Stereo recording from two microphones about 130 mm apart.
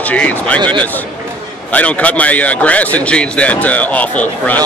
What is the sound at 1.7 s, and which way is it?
Speech, 10° left (ahead or behind).